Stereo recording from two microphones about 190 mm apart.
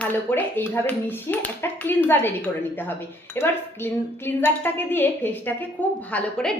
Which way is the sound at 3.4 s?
10° left (ahead or behind).